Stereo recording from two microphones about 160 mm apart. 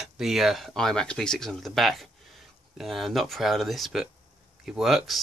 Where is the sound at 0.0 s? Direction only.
Centre (ahead or behind).